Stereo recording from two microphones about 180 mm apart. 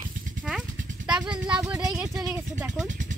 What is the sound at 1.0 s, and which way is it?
Speech, 5° right (ahead or behind).